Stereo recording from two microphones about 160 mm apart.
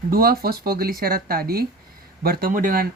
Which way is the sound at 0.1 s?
70° right (ahead or behind).